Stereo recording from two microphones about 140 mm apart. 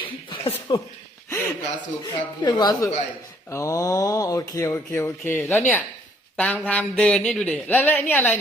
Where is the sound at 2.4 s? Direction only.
30° left (ahead or behind).